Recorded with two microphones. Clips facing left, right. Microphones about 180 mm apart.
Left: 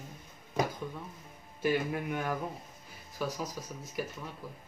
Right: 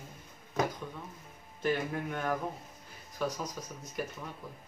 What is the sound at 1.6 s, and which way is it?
Speech, 10° left (ahead or behind).